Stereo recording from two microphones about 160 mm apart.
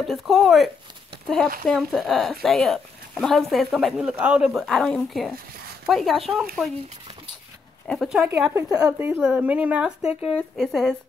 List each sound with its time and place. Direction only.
0.0 s speech: centre (ahead or behind)
1.7 s speech: centre (ahead or behind)
7.8 s speech: centre (ahead or behind)
8.5 s speech: 25° right (ahead or behind)
8.8 s a woman's voice: 10° right (ahead or behind)